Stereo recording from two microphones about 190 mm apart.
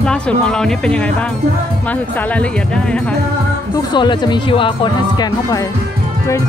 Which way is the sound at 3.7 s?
25° left (ahead or behind).